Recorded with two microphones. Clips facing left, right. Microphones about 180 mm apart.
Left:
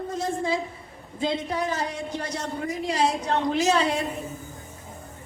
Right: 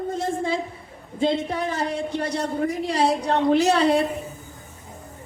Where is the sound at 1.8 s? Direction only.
55° right (ahead or behind).